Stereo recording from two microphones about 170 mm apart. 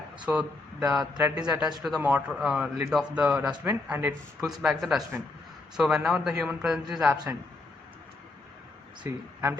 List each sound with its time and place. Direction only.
0.3 s a man's voice: 10° right (ahead or behind)
9.0 s speech: 20° right (ahead or behind)